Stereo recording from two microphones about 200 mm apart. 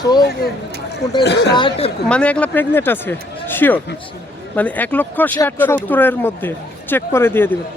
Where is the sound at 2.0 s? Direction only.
5° left (ahead or behind).